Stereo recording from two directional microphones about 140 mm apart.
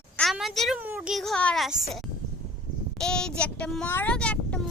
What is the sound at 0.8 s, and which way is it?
Speech, 15° right (ahead or behind).